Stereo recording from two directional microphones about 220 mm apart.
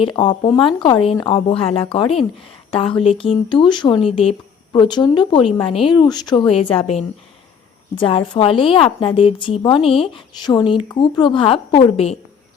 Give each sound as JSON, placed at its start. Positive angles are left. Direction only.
{"t": 0.0, "sound": "a woman's voice", "side_deg": 25}